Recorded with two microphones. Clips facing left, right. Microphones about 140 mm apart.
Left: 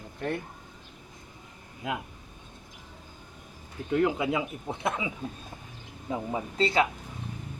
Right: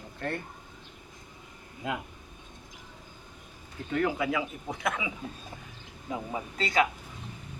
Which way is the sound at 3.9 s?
20° left (ahead or behind).